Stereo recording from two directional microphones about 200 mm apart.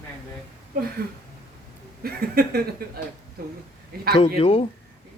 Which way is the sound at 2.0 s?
50° right (ahead or behind).